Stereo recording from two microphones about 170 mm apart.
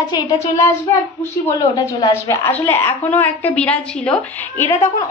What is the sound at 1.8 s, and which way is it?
A woman's voice, 20° left (ahead or behind).